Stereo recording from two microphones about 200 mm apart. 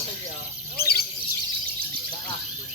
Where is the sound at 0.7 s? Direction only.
50° left (ahead or behind).